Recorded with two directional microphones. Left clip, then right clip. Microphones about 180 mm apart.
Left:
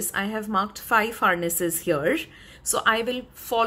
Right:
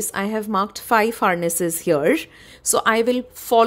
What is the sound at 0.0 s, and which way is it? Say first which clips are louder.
A woman's voice: right 4 dB; 45° right (ahead or behind).